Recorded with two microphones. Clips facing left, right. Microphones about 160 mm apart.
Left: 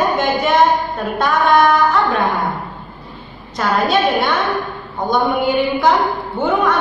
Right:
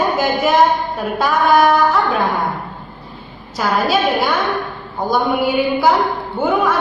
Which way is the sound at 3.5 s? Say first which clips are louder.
Left 1 dB; 5° right (ahead or behind).